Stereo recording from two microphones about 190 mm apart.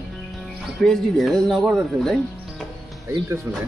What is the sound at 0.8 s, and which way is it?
Speech, centre (ahead or behind).